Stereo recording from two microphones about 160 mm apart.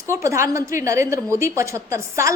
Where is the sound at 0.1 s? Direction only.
20° right (ahead or behind).